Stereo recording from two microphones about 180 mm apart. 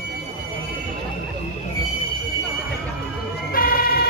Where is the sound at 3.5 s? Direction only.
55° left (ahead or behind).